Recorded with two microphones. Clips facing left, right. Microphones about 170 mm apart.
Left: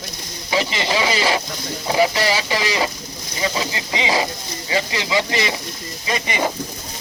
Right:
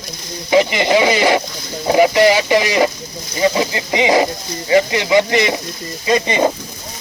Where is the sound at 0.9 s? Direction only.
20° right (ahead or behind).